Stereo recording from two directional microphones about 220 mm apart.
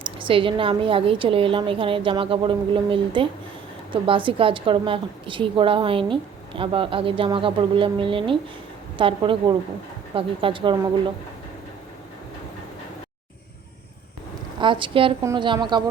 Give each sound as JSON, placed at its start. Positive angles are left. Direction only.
{"t": 0.0, "sound": "a woman's voice", "side_deg": -25}
{"t": 14.6, "sound": "a woman's voice", "side_deg": -20}